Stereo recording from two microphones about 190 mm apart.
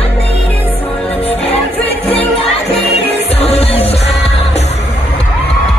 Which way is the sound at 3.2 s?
30° left (ahead or behind).